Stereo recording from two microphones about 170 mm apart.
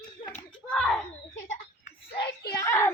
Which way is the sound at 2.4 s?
20° left (ahead or behind).